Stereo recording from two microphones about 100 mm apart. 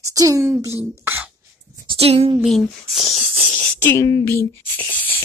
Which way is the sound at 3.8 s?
20° left (ahead or behind).